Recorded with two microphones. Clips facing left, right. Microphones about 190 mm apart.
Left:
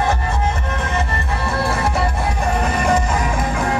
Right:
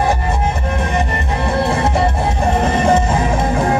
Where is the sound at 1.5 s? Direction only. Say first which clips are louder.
Right 4 dB; 20° right (ahead or behind).